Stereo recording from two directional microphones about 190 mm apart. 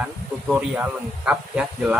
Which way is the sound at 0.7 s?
5° right (ahead or behind).